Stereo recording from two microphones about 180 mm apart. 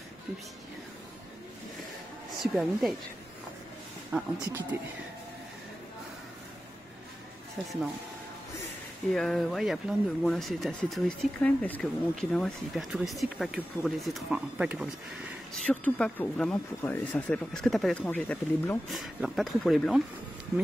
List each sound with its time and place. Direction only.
2.3 s a woman's voice: centre (ahead or behind)
4.1 s speech: 10° right (ahead or behind)
9.1 s speech: centre (ahead or behind)
15.5 s speech: 5° left (ahead or behind)